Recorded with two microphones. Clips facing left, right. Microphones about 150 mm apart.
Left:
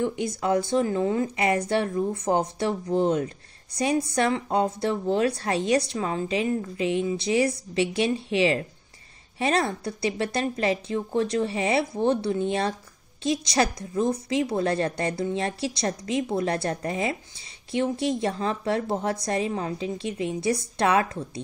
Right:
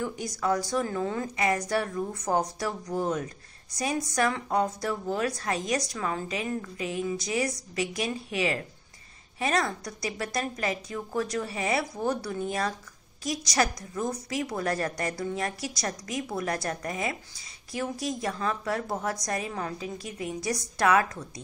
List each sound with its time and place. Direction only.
0.0 s speech: 25° left (ahead or behind)